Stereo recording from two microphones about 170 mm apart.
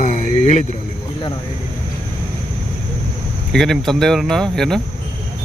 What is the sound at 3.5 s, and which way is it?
Speech, centre (ahead or behind).